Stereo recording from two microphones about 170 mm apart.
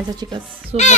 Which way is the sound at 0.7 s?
40° right (ahead or behind).